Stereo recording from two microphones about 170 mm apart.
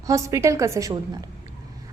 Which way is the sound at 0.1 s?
20° right (ahead or behind).